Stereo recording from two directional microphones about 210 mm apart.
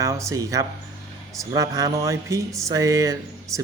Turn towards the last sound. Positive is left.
turn(degrees=-15)  # may be behind; listen again after turning